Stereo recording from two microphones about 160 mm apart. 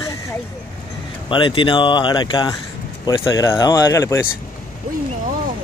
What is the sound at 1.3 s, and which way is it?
Speech, 30° left (ahead or behind).